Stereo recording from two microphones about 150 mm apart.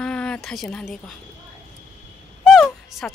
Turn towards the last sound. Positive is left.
turn(degrees=0)  # may be behind; listen again after turning